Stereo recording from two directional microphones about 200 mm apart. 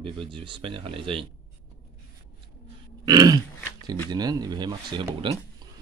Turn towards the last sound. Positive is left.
turn(degrees=-25)  # may be behind; listen again after turning